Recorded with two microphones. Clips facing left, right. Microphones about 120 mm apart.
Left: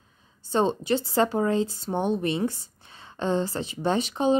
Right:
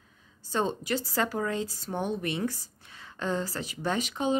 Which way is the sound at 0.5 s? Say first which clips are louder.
Left 6 dB; 30° left (ahead or behind).